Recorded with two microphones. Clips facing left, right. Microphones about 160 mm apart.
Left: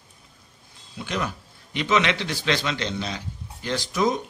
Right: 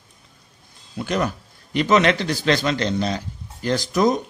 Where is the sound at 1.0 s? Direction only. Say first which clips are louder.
Right 6 dB; 45° right (ahead or behind).